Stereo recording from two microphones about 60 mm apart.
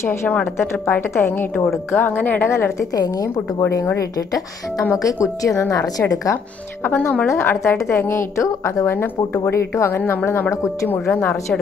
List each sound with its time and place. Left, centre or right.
0.0 s a woman's voice: left
1.9 s speech: left
4.9 s a woman's voice: left
6.8 s a woman's voice: left
10.5 s speech: left
10.9 s speech: left